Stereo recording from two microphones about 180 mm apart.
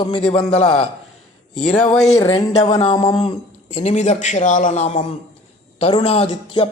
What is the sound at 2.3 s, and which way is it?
A man's voice, 30° left (ahead or behind).